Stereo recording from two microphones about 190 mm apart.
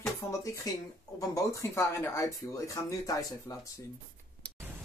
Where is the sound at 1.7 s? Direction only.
15° left (ahead or behind).